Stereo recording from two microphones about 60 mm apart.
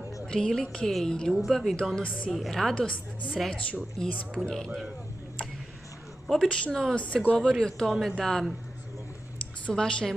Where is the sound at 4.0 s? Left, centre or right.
Centre.